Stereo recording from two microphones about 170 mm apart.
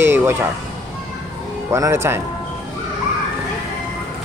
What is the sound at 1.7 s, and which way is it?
Music, 15° right (ahead or behind).